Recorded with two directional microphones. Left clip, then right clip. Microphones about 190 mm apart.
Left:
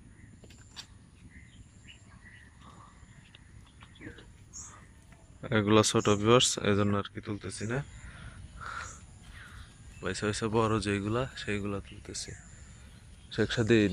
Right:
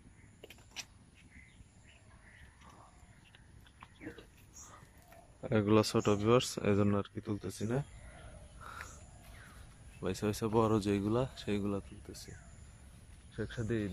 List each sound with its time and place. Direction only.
5.4 s speech: 5° right (ahead or behind)
8.6 s crow: 5° right (ahead or behind)
10.0 s speech: 15° right (ahead or behind)
12.0 s speech: 5° right (ahead or behind)
13.3 s a man's voice: 25° left (ahead or behind)